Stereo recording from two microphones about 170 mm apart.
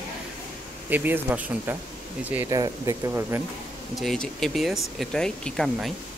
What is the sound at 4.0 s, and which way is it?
Speech, centre (ahead or behind).